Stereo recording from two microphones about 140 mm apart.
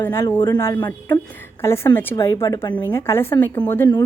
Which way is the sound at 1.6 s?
20° left (ahead or behind).